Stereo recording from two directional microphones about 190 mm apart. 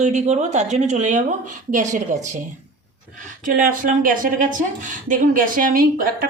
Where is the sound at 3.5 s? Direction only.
45° right (ahead or behind).